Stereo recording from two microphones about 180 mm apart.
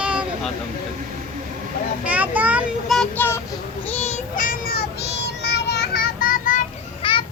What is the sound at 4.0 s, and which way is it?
Child singing, 35° left (ahead or behind).